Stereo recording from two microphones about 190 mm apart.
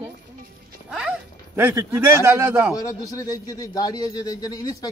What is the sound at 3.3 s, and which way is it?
Speech, 20° left (ahead or behind).